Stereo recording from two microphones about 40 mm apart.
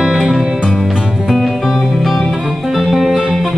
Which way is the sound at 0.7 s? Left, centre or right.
Centre.